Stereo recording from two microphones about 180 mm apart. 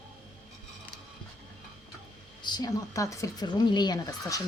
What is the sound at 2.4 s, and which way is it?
Speech, 20° left (ahead or behind).